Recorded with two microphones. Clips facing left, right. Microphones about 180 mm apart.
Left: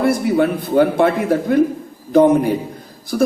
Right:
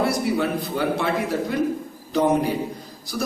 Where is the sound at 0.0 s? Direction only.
55° left (ahead or behind).